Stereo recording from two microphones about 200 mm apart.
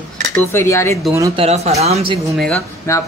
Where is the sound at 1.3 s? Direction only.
30° right (ahead or behind).